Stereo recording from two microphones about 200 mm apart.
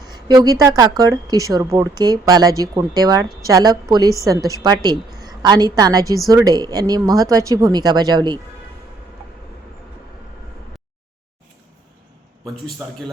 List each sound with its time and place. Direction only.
0.0 s a sound: 20° right (ahead or behind)
0.6 s speech: 20° right (ahead or behind)
12.5 s a man's voice: centre (ahead or behind)